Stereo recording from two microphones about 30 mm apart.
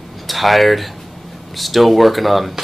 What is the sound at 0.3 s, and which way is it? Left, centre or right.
Speech, centre.